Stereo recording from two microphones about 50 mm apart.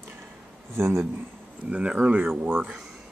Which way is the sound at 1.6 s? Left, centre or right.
Right.